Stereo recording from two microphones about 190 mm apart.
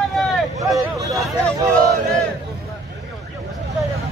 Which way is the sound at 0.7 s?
15° right (ahead or behind).